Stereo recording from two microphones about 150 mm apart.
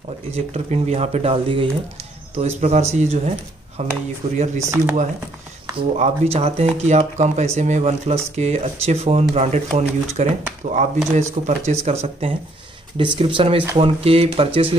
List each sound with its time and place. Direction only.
0.3 s speech: 45° right (ahead or behind)
2.3 s speech: 45° right (ahead or behind)
4.6 s speech: 20° right (ahead or behind)
5.8 s speech: 45° right (ahead or behind)